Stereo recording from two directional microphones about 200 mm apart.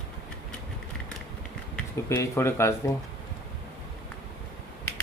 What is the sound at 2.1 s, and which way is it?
Speech, 15° left (ahead or behind).